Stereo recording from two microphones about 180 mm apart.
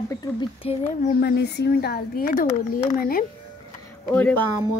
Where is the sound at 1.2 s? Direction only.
65° left (ahead or behind).